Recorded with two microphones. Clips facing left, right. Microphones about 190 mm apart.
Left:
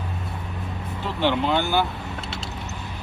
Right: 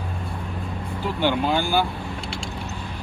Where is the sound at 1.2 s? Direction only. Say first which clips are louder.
Even; 20° left (ahead or behind).